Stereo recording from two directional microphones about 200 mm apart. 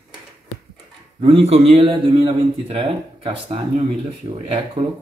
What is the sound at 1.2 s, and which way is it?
A man's voice, 30° right (ahead or behind).